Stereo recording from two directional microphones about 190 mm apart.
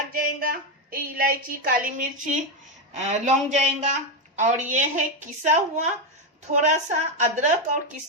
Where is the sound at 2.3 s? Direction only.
40° right (ahead or behind).